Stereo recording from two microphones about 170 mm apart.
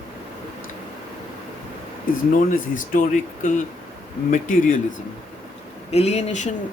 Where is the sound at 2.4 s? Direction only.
55° left (ahead or behind).